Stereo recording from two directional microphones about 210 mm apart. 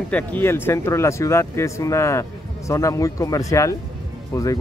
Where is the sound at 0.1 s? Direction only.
10° left (ahead or behind).